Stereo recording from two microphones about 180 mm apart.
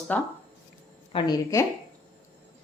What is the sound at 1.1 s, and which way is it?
Speech, 20° left (ahead or behind).